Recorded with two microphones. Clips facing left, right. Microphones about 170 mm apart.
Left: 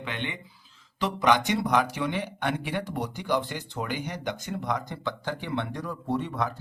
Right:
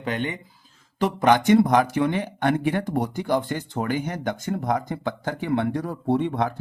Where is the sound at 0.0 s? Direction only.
40° right (ahead or behind).